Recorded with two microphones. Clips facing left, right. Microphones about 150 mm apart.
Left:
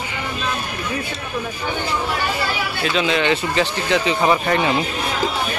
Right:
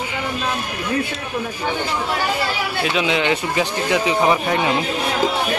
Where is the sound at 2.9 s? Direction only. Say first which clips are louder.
Left 1 dB; 15° right (ahead or behind).